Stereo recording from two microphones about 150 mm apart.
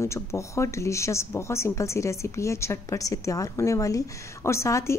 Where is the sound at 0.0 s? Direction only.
20° left (ahead or behind).